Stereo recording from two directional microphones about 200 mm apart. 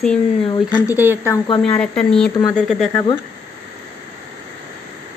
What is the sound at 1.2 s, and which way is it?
Speech, 15° left (ahead or behind).